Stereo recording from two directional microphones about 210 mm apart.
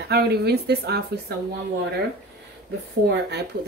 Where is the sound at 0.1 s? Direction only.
50° right (ahead or behind).